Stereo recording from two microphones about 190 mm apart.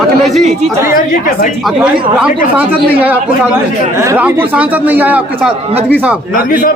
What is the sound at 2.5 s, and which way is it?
A man's voice, 10° right (ahead or behind).